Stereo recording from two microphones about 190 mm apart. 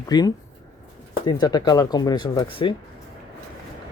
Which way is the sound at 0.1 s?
20° left (ahead or behind).